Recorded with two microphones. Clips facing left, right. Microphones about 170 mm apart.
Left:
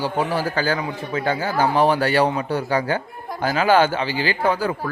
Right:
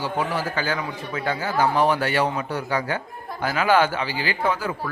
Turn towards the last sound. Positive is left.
turn(degrees=35)  # may be behind; listen again after turning